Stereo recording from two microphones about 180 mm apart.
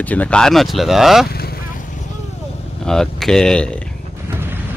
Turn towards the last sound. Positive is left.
turn(degrees=5)  # may be behind; listen again after turning